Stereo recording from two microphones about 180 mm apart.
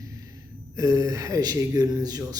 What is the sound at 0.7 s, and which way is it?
A man's voice, 20° right (ahead or behind).